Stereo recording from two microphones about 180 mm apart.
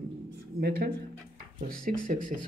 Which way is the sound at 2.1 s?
45° right (ahead or behind).